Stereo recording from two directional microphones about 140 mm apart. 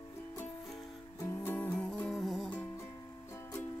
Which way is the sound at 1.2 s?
20° left (ahead or behind).